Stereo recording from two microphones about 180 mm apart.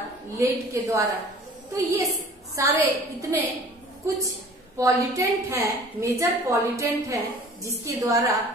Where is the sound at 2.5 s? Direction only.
15° right (ahead or behind).